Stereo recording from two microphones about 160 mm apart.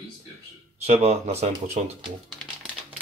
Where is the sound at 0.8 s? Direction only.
45° right (ahead or behind).